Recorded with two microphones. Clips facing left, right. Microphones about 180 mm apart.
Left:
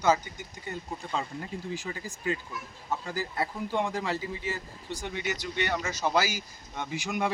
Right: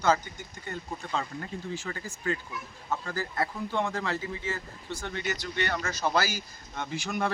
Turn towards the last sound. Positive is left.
turn(degrees=10)  # may be behind; listen again after turning